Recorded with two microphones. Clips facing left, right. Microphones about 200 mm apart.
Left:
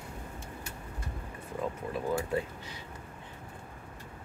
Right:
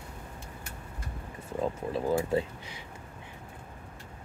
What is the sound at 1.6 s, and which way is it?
Speech, 30° right (ahead or behind).